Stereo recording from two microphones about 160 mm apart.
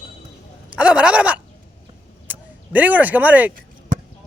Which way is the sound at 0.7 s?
5° right (ahead or behind).